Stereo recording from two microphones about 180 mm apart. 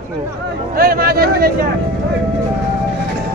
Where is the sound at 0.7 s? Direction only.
55° right (ahead or behind).